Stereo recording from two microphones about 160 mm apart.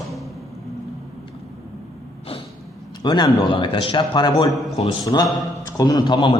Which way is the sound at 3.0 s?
25° left (ahead or behind).